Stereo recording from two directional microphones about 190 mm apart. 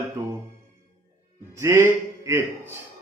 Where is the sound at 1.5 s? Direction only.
15° right (ahead or behind).